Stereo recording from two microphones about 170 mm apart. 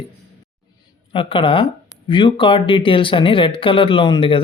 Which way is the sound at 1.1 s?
30° left (ahead or behind).